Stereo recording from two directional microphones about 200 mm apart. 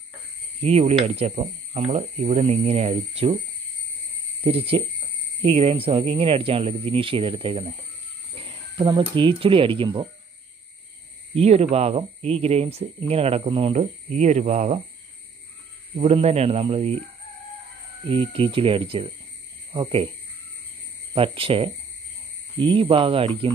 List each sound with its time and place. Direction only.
0.6 s speech: 30° right (ahead or behind)
4.4 s speech: 30° right (ahead or behind)
11.3 s speech: 30° right (ahead or behind)
16.0 s speech: 30° right (ahead or behind)
18.0 s speech: 30° right (ahead or behind)
21.1 s speech: 25° right (ahead or behind)